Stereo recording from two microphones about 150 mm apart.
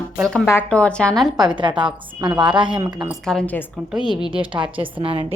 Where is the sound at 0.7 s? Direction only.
5° left (ahead or behind).